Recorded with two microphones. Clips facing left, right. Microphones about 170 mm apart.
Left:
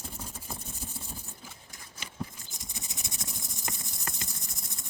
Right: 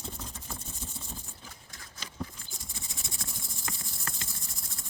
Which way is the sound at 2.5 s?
20° left (ahead or behind).